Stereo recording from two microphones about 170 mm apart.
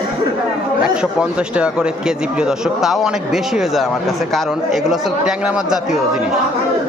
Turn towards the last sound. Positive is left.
turn(degrees=-5)  # may be behind; listen again after turning